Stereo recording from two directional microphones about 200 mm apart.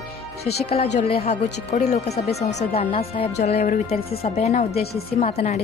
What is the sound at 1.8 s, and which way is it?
A woman's voice, 35° left (ahead or behind).